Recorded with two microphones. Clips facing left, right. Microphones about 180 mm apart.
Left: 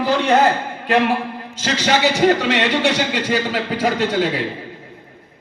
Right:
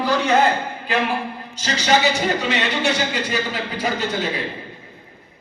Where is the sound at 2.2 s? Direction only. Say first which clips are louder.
Left 6 dB; 90° left.